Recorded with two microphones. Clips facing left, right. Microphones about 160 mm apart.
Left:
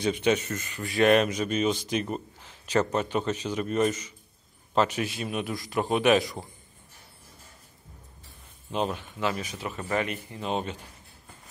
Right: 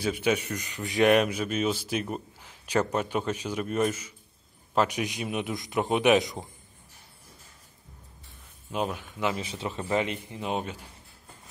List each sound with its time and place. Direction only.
0.0 s speech: 5° right (ahead or behind)
8.7 s speech: 10° right (ahead or behind)